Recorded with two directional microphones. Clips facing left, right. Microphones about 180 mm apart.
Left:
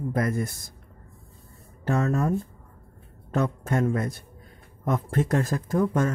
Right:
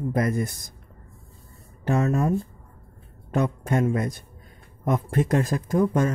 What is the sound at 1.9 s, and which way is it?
Speech, 15° right (ahead or behind).